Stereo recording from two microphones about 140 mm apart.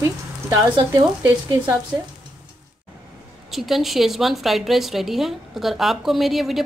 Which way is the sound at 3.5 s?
Centre (ahead or behind).